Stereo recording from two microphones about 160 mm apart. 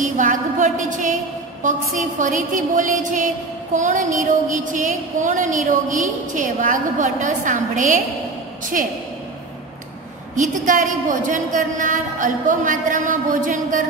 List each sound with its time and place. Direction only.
0.0 s a sound: 55° right (ahead or behind)
0.7 s a woman's voice: 50° right (ahead or behind)
10.3 s a woman's voice: 55° right (ahead or behind)